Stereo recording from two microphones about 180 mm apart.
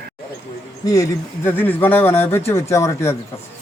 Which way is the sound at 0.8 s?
20° left (ahead or behind).